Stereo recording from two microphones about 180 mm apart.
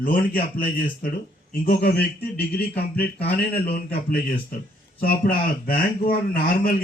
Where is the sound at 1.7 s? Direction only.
60° left (ahead or behind).